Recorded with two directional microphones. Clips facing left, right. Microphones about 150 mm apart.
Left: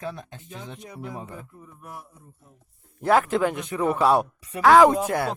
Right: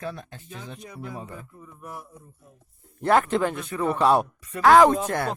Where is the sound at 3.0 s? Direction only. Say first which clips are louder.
Left 1 dB; 5° left (ahead or behind).